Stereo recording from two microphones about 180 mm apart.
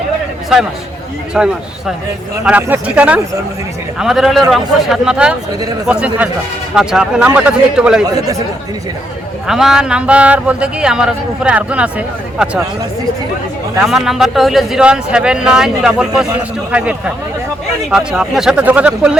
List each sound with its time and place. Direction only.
1.4 s speech: 5° right (ahead or behind)
8.0 s speech: 20° right (ahead or behind)
9.5 s speech: centre (ahead or behind)
13.8 s speech: centre (ahead or behind)
17.9 s speech: 5° right (ahead or behind)